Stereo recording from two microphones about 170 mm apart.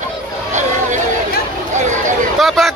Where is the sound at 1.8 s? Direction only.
45° right (ahead or behind).